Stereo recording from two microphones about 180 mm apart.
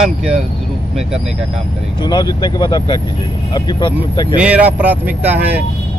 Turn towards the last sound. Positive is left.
turn(degrees=-10)  # may be behind; listen again after turning